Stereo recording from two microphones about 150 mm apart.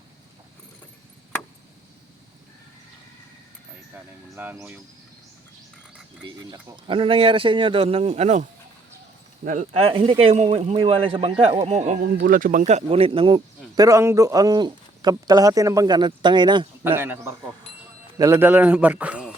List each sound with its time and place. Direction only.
3.9 s a man's voice: 15° right (ahead or behind)
6.2 s a man's voice: 30° right (ahead or behind); by 8.4 s 50° right (ahead or behind)
9.4 s speech: 65° right (ahead or behind)
9.7 s a man's voice: 40° right (ahead or behind)
12.0 s speech: 70° right (ahead or behind); by 13.4 s 35° right (ahead or behind)
13.7 s speech: 20° right (ahead or behind)
16.8 s a man's voice: 15° right (ahead or behind)